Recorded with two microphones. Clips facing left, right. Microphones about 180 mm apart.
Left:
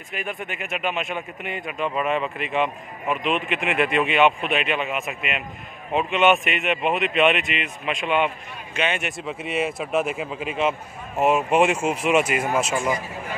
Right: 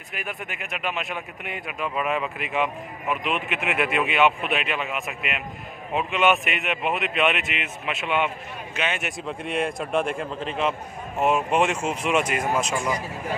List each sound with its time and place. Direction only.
0.1 s speech: centre (ahead or behind)